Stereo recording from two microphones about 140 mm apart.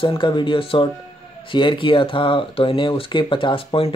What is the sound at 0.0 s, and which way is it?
Speech, 35° left (ahead or behind).